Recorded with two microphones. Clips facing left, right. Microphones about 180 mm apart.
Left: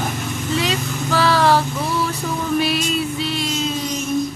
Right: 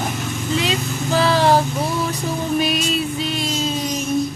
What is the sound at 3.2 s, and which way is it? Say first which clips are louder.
Music: even; 35° right (ahead or behind).